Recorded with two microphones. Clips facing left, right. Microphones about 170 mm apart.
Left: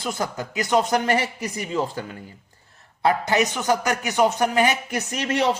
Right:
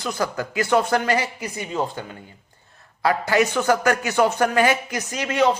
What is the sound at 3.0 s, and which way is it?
A man's voice, 20° left (ahead or behind).